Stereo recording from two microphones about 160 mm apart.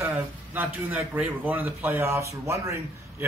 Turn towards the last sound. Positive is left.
turn(degrees=-20)  # may be behind; listen again after turning